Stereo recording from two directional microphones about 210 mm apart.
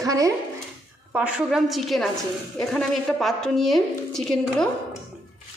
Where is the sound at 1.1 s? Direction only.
5° right (ahead or behind).